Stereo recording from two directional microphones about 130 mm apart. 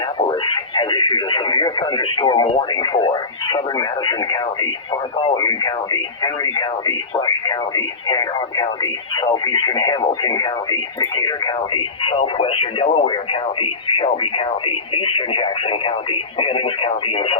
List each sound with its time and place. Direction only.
0.2 s speech: 40° left (ahead or behind)